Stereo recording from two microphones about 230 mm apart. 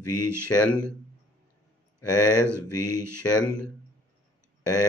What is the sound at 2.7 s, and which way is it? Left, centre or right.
Speech, left.